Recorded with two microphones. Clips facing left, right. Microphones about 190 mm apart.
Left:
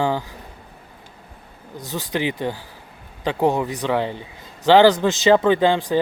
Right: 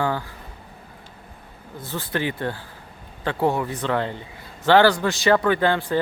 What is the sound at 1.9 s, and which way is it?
Speech, 15° left (ahead or behind).